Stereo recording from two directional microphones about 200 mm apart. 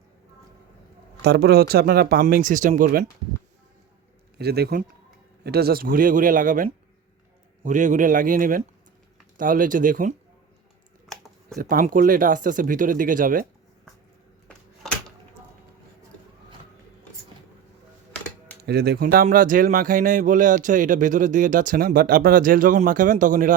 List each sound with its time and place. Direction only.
1.2 s speech: 55° right (ahead or behind)
4.4 s a man's voice: 50° right (ahead or behind)
11.1 s a sound: centre (ahead or behind)
11.5 s speech: 45° right (ahead or behind)
18.6 s speech: 55° right (ahead or behind)